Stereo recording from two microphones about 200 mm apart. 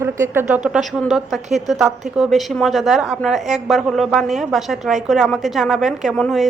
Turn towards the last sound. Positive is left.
turn(degrees=0)  # may be behind; listen again after turning